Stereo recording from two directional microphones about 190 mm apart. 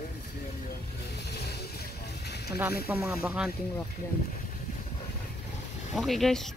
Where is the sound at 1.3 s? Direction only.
60° left (ahead or behind).